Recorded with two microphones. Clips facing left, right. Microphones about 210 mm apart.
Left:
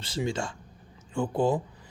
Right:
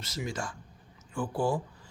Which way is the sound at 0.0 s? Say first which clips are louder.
Left 5 dB; 30° left (ahead or behind).